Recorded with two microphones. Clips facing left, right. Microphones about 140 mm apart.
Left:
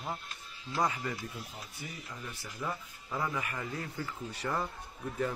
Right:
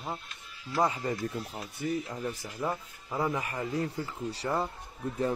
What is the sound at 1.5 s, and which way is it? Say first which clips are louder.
Speech: right 12 dB; 55° right (ahead or behind).